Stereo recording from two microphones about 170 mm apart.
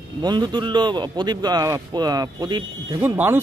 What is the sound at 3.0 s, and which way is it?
Speech, 10° right (ahead or behind).